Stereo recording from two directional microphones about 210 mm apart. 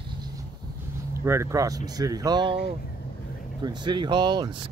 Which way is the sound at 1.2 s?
15° right (ahead or behind).